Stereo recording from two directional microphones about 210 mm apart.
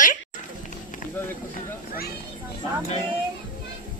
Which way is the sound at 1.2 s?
10° left (ahead or behind).